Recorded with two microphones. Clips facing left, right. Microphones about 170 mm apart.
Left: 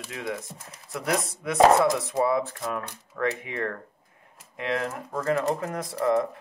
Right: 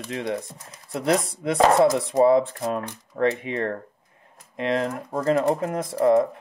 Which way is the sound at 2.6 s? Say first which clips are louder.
Right 5 dB; 30° right (ahead or behind).